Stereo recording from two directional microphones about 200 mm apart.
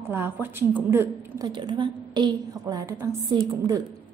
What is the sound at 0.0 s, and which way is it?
A woman's voice, 10° right (ahead or behind).